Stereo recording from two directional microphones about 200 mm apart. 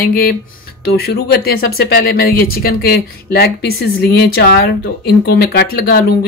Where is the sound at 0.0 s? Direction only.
45° left (ahead or behind).